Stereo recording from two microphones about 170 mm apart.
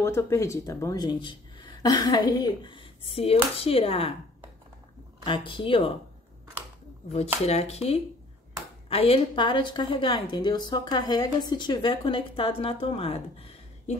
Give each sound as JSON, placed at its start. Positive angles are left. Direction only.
{"t": 0.0, "sound": "a woman's voice", "side_deg": 15}
{"t": 5.2, "sound": "speech", "side_deg": 30}
{"t": 7.4, "sound": "a woman's voice", "side_deg": 40}